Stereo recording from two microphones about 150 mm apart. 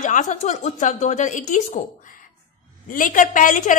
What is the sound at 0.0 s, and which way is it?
Speech, 55° left (ahead or behind).